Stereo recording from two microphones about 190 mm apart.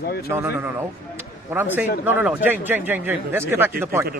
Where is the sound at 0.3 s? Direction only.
15° right (ahead or behind).